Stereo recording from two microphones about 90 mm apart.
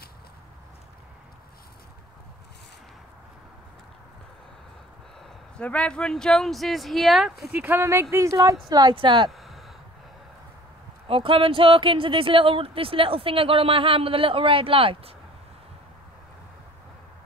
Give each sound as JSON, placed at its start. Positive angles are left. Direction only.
{"t": 5.6, "sound": "speech", "side_deg": 15}
{"t": 7.5, "sound": "speech", "side_deg": -25}
{"t": 8.9, "sound": "speech", "side_deg": -65}
{"t": 9.3, "sound": "a sound", "side_deg": 0}
{"t": 11.1, "sound": "speech", "side_deg": -85}